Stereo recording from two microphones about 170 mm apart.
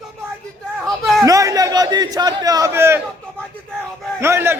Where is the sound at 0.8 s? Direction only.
Centre (ahead or behind).